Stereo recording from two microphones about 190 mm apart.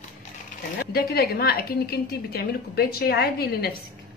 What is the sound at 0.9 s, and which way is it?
A woman's voice, 55° left (ahead or behind).